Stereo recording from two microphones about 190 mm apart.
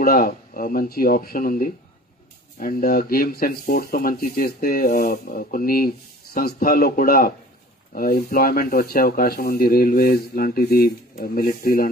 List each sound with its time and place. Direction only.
0.0 s speech: 50° left (ahead or behind)